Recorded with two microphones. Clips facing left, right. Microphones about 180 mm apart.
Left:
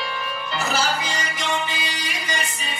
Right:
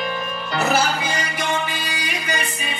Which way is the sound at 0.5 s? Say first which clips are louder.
Right 4 dB; 60° right (ahead or behind).